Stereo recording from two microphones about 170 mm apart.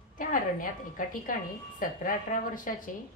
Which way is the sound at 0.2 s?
55° left (ahead or behind).